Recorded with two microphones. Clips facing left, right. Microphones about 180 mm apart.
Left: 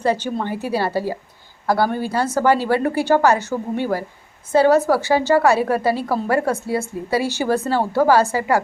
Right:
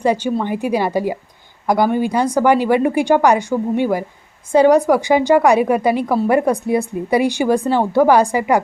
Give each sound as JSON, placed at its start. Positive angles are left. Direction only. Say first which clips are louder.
{"t": 0.0, "sound": "a woman's voice", "louder": "right 3 dB", "side_deg": -15}